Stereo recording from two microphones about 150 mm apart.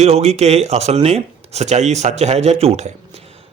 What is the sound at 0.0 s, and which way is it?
Speech, 45° right (ahead or behind).